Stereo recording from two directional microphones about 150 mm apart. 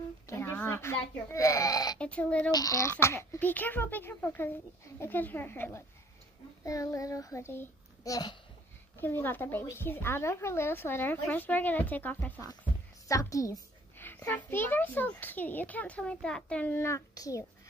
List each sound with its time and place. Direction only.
0.3 s a sound: 15° left (ahead or behind)
1.3 s a child's voice: 20° left (ahead or behind)
2.0 s a woman's voice: 10° left (ahead or behind)
2.5 s a woman's voice: 25° left (ahead or behind)
8.9 s a woman's voice: 15° left (ahead or behind)